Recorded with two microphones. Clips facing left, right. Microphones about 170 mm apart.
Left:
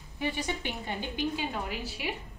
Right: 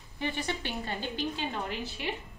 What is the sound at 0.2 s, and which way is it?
A woman's voice, 15° left (ahead or behind).